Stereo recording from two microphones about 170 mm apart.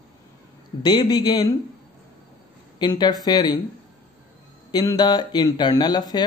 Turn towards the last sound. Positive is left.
turn(degrees=25)  # may be behind; listen again after turning